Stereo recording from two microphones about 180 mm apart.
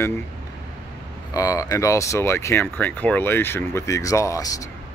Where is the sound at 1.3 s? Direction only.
20° left (ahead or behind).